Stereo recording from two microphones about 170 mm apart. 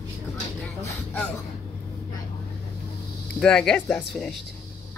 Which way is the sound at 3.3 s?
5° left (ahead or behind).